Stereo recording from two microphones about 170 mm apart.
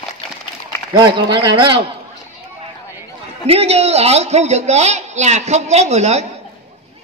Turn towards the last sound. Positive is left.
turn(degrees=-40)  # may be behind; listen again after turning